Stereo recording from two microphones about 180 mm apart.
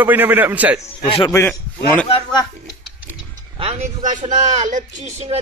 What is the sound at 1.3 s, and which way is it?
Speech, 10° left (ahead or behind).